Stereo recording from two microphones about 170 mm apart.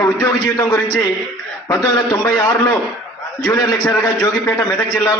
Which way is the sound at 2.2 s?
20° left (ahead or behind).